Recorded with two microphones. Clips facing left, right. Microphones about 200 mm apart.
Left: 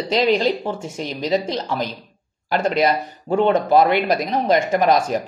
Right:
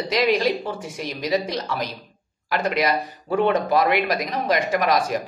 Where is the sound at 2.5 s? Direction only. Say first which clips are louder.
Left 4 dB; 30° left (ahead or behind).